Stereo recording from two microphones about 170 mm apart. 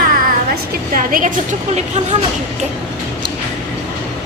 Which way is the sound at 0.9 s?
55° right (ahead or behind).